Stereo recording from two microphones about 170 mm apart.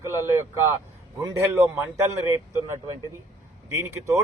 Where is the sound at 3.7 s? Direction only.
15° right (ahead or behind).